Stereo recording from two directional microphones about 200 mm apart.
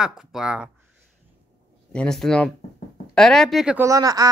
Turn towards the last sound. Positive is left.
turn(degrees=-20)  # may be behind; listen again after turning